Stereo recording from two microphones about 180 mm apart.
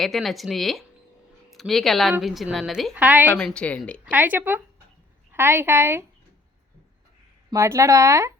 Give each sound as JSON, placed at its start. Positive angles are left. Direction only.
{"t": 0.0, "sound": "a woman's voice", "side_deg": 0}
{"t": 3.4, "sound": "a woman's voice", "side_deg": 5}
{"t": 4.0, "sound": "speech", "side_deg": -10}
{"t": 7.5, "sound": "speech", "side_deg": -15}